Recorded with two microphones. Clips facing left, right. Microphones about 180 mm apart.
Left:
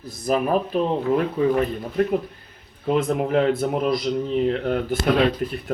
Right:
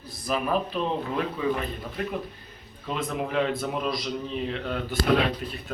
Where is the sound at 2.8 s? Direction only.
50° left (ahead or behind).